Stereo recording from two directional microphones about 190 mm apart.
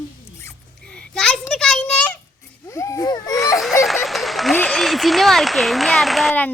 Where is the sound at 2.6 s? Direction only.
15° left (ahead or behind).